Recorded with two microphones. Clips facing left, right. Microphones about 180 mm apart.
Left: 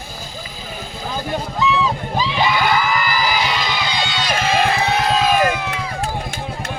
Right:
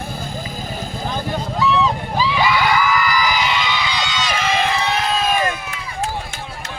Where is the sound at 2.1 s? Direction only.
20° left (ahead or behind); by 3.7 s 35° left (ahead or behind).